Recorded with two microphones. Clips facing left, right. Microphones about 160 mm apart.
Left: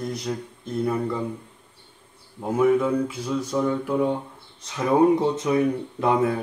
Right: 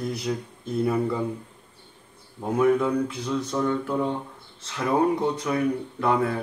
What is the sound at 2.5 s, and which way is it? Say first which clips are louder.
Speech: left 1 dB; centre (ahead or behind).